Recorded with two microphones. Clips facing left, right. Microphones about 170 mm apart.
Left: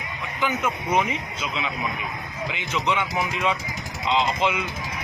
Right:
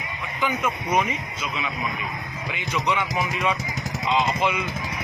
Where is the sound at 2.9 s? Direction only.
5° left (ahead or behind).